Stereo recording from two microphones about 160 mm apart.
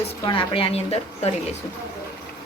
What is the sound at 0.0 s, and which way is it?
A woman's voice, 35° left (ahead or behind).